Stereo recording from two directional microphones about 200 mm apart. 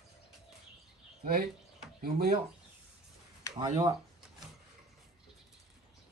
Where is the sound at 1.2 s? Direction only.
50° right (ahead or behind).